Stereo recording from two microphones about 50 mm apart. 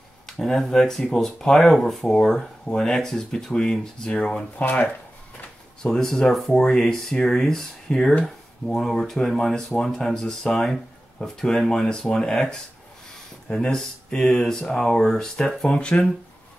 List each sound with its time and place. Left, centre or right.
0.3 s speech: centre
4.6 s speech: left
5.8 s speech: centre